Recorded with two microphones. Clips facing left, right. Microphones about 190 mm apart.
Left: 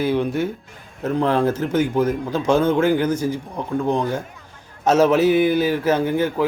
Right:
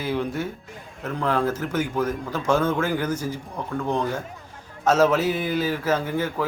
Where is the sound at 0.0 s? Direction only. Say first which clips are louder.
Left 6 dB; 20° left (ahead or behind).